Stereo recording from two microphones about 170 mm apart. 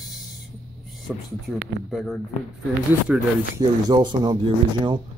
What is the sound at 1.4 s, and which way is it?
Speech, centre (ahead or behind).